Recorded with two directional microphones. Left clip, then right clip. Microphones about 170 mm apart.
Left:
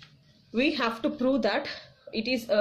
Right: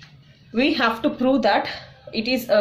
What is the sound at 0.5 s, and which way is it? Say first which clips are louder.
Speech: right 7 dB; 30° left (ahead or behind).